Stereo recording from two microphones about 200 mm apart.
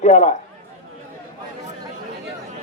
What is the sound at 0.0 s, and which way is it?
Speech, 35° left (ahead or behind).